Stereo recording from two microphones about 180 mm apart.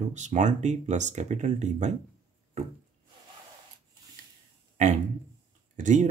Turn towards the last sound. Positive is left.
turn(degrees=-45)  # may be behind; listen again after turning